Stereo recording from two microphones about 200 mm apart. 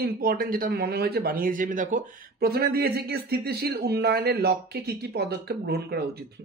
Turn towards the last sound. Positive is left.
turn(degrees=-55)  # may be behind; listen again after turning